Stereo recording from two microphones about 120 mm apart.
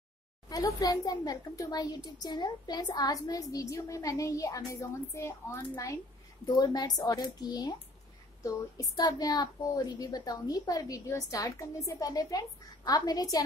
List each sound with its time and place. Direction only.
0.5 s a child's voice: 30° left (ahead or behind)
6.4 s a child's voice: 35° left (ahead or behind)